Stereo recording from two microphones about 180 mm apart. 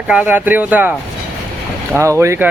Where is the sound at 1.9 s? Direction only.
15° right (ahead or behind).